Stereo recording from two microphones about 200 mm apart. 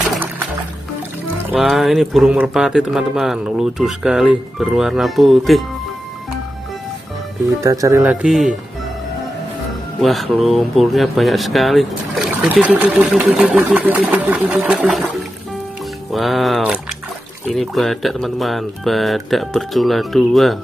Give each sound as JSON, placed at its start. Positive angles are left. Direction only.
{"t": 1.5, "sound": "speech", "side_deg": 0}
{"t": 7.6, "sound": "speech", "side_deg": -15}
{"t": 8.0, "sound": "speech", "side_deg": -5}
{"t": 9.9, "sound": "speech", "side_deg": 0}
{"t": 16.1, "sound": "speech", "side_deg": 0}